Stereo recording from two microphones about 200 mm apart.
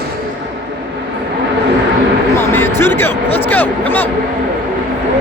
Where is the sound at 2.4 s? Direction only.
10° left (ahead or behind).